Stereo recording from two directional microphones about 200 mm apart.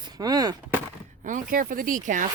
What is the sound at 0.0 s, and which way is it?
Speech, 20° right (ahead or behind).